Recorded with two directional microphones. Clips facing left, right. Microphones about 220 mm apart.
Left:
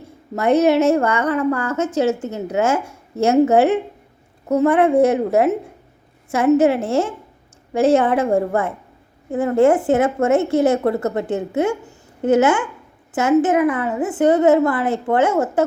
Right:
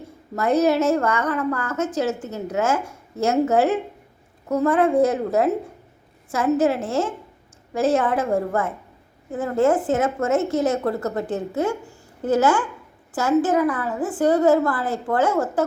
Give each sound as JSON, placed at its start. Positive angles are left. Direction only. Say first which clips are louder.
{"t": 0.3, "sound": "a woman's voice", "louder": "left 4 dB", "side_deg": 25}